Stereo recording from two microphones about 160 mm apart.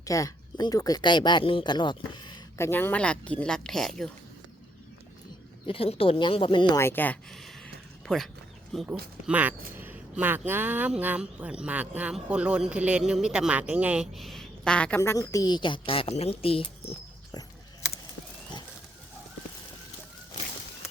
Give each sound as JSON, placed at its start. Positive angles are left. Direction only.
{"t": 0.0, "sound": "speech", "side_deg": 20}
{"t": 2.6, "sound": "a woman's voice", "side_deg": 15}
{"t": 5.6, "sound": "a woman's voice", "side_deg": 35}
{"t": 6.7, "sound": "a sound", "side_deg": 15}
{"t": 8.7, "sound": "speech", "side_deg": 0}
{"t": 9.2, "sound": "speech", "side_deg": -10}
{"t": 17.3, "sound": "a sound", "side_deg": 25}